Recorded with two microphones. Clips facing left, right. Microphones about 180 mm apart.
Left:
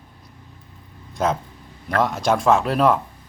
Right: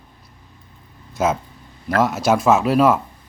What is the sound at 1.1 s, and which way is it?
Speech, 5° right (ahead or behind).